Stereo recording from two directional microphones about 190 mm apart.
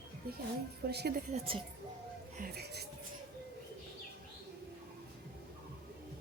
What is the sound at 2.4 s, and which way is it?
Speech, 60° right (ahead or behind).